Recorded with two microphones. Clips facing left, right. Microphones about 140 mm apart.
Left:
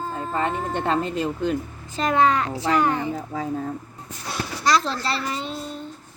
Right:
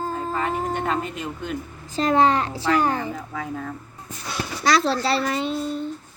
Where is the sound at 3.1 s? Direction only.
35° left (ahead or behind).